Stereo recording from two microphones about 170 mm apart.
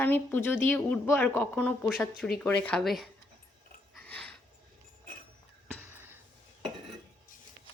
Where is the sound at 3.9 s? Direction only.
5° left (ahead or behind).